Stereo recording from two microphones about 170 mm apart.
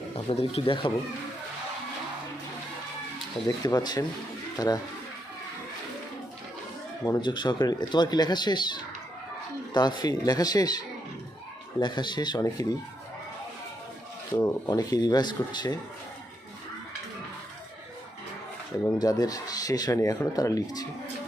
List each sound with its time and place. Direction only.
0.3 s speech: 35° left (ahead or behind)
3.4 s speech: 25° left (ahead or behind)
7.0 s speech: 20° left (ahead or behind)
14.3 s speech: 25° left (ahead or behind)
18.9 s speech: 20° left (ahead or behind)